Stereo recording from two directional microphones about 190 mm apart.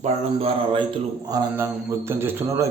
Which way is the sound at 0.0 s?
30° right (ahead or behind).